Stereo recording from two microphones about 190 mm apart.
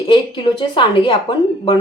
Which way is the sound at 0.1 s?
25° left (ahead or behind).